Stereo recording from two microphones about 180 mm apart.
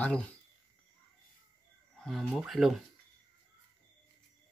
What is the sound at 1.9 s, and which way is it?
Speech, 5° left (ahead or behind).